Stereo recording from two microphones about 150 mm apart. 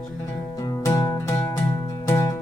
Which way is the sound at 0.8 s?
20° left (ahead or behind).